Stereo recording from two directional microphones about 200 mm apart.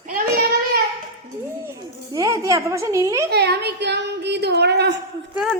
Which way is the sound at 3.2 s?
55° right (ahead or behind).